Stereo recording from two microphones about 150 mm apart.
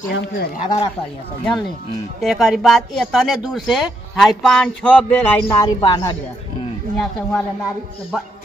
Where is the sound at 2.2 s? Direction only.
Centre (ahead or behind).